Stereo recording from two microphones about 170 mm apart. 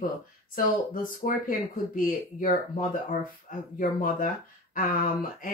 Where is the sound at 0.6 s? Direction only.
55° left (ahead or behind).